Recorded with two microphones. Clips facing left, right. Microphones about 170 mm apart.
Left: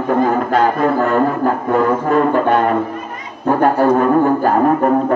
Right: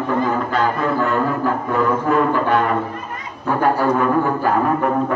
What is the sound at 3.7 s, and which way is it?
Music, 45° left (ahead or behind).